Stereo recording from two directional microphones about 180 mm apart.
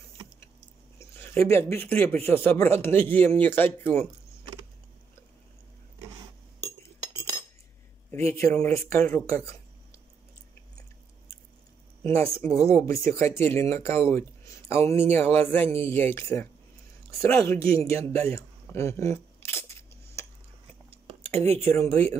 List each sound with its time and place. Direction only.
0.9 s speech: 10° left (ahead or behind)
8.1 s speech: 15° left (ahead or behind)
12.0 s speech: 15° left (ahead or behind)
18.1 s a sound: 15° left (ahead or behind)
21.1 s a sound: 35° right (ahead or behind)
21.5 s speech: 15° left (ahead or behind)